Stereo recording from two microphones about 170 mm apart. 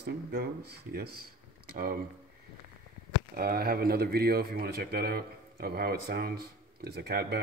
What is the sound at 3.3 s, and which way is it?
Speech, 65° right (ahead or behind).